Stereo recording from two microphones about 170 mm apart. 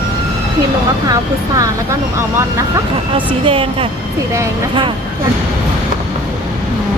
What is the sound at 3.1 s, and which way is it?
Speech, 30° right (ahead or behind).